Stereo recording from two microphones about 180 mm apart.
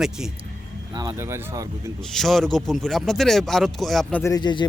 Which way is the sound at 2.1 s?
Centre (ahead or behind).